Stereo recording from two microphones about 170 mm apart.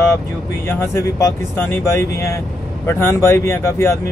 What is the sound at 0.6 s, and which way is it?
Speech, 15° left (ahead or behind).